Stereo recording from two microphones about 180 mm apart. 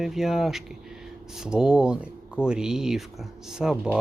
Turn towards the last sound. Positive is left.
turn(degrees=-5)  # may be behind; listen again after turning